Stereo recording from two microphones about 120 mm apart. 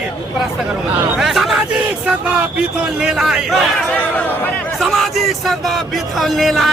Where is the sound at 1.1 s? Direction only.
Centre (ahead or behind).